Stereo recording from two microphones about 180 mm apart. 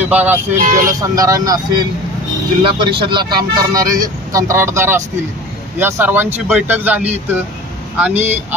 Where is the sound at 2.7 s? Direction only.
25° right (ahead or behind); by 7.1 s 10° right (ahead or behind).